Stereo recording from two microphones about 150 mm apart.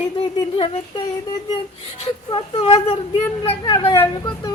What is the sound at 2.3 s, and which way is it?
Speech, 35° left (ahead or behind).